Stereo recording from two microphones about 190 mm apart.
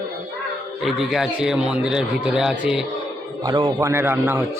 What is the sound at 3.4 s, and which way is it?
Speech, 25° right (ahead or behind).